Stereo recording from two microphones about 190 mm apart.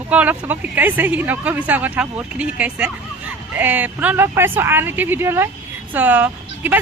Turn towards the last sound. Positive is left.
turn(degrees=-10)  # may be behind; listen again after turning